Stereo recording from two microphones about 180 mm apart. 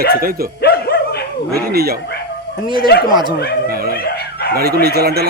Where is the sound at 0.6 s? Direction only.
60° left (ahead or behind).